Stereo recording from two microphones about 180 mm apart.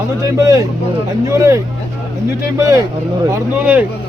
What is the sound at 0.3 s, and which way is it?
A man's voice, 20° right (ahead or behind).